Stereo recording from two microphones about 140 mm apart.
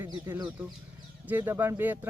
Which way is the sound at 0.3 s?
15° right (ahead or behind).